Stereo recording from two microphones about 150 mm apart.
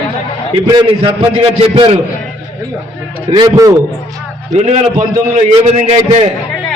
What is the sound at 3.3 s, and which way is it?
Speech, 25° right (ahead or behind).